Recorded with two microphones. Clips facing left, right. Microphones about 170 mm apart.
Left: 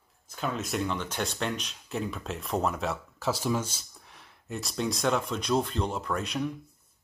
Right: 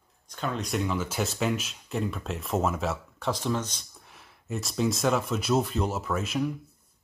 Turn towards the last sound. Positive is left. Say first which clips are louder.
# right 2 dB
turn(degrees=-5)  # may be behind; listen again after turning